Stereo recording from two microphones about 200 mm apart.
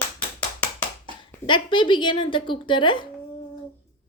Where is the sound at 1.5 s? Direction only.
25° left (ahead or behind).